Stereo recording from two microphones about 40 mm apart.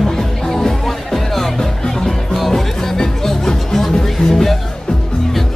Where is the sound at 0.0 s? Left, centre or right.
Centre.